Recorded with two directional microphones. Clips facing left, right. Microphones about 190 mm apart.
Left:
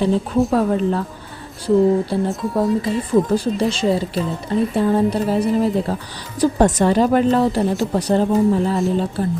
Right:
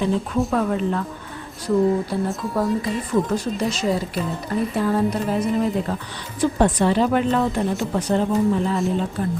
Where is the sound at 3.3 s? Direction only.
30° left (ahead or behind).